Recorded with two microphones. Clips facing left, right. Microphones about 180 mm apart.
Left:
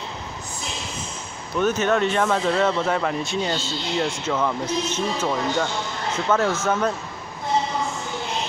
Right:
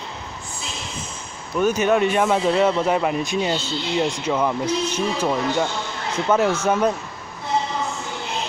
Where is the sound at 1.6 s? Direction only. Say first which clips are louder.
Right 2 dB; 10° right (ahead or behind).